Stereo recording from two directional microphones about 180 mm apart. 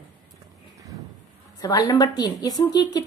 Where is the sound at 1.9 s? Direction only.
25° left (ahead or behind).